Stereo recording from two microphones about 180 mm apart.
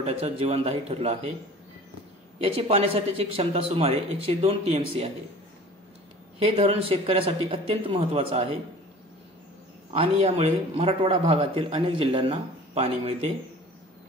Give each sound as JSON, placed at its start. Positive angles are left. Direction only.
{"t": 0.0, "sound": "speech", "side_deg": -35}
{"t": 2.4, "sound": "speech", "side_deg": -30}
{"t": 6.4, "sound": "speech", "side_deg": -30}
{"t": 9.9, "sound": "speech", "side_deg": -30}